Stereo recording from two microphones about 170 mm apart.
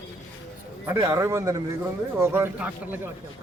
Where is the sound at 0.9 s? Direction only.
15° right (ahead or behind).